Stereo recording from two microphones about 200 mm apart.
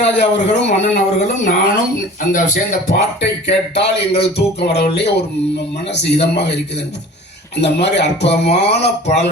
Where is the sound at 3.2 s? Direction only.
60° left (ahead or behind).